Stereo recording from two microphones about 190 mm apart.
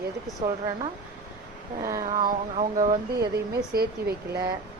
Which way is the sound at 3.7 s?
55° right (ahead or behind).